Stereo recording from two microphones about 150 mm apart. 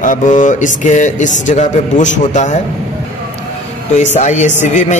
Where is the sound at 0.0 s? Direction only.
60° left (ahead or behind).